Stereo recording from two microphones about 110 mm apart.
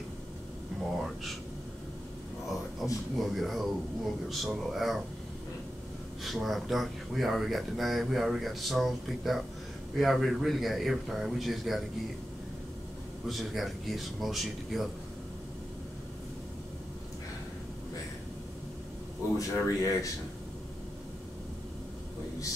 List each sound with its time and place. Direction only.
2.8 s a sound: 5° left (ahead or behind)
3.2 s speech: centre (ahead or behind)
6.2 s speech: centre (ahead or behind)
13.3 s speech: centre (ahead or behind)
19.3 s speech: 30° left (ahead or behind)